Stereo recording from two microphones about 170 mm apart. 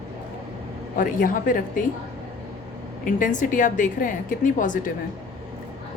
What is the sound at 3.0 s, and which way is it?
A woman's voice, 50° left (ahead or behind).